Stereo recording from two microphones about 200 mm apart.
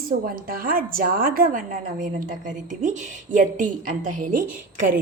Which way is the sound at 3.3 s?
40° right (ahead or behind).